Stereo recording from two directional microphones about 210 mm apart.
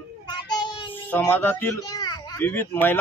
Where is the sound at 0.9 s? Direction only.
10° left (ahead or behind).